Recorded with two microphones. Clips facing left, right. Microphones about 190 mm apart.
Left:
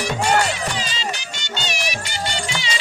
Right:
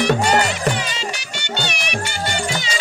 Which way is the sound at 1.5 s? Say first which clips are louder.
Right 2 dB; 60° right (ahead or behind).